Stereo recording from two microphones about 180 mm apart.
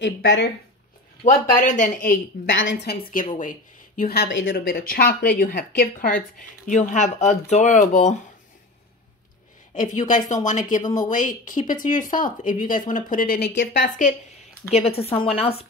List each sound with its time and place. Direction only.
0.0 s speech: 90° left
1.5 s speech: 45° left (ahead or behind)
2.5 s a woman's voice: 90° left
4.6 s speech: 55° left (ahead or behind)
9.8 s speech: 45° left (ahead or behind)
10.8 s speech: 20° left (ahead or behind)
11.1 s speech: 45° left (ahead or behind)
14.7 s speech: 35° left (ahead or behind)